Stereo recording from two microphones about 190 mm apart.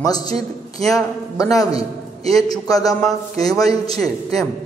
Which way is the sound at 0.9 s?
15° left (ahead or behind).